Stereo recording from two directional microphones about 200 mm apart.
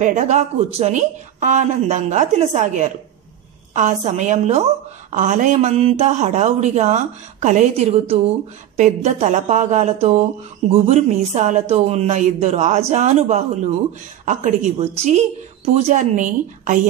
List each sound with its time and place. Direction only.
0.0 s speech: 35° right (ahead or behind)